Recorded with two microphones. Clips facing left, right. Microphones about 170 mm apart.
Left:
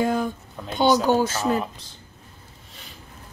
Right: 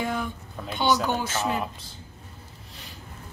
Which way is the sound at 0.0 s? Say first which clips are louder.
Left 6 dB; 40° left (ahead or behind).